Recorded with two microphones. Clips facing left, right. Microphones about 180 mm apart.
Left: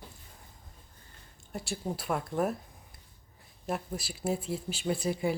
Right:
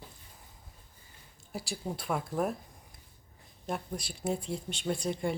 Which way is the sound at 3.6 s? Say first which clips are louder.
Left 2 dB; 5° left (ahead or behind).